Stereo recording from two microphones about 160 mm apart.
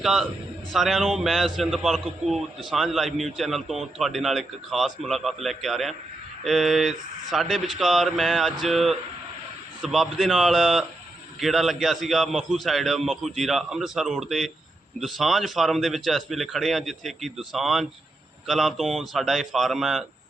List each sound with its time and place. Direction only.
0.0 s speech: centre (ahead or behind)